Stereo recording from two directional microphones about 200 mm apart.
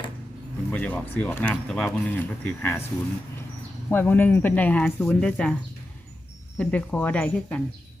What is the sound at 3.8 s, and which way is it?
A man's voice, 10° left (ahead or behind).